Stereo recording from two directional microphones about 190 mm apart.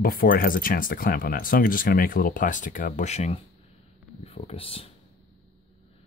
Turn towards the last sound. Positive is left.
turn(degrees=30)  # may be behind; listen again after turning